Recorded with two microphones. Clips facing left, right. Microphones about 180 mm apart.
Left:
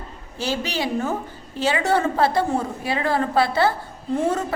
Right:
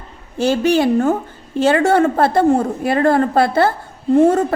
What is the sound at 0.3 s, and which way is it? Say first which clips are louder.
A woman's voice: right 11 dB; 55° right (ahead or behind).